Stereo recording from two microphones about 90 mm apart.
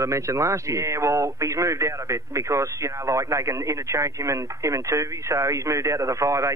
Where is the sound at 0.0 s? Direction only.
35° right (ahead or behind).